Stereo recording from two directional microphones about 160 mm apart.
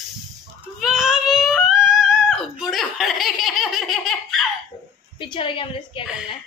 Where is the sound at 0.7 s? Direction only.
Centre (ahead or behind).